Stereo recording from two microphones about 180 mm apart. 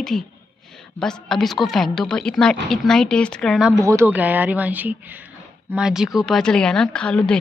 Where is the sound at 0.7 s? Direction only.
Centre (ahead or behind).